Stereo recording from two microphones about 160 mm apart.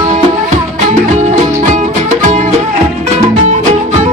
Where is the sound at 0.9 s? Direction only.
50° right (ahead or behind).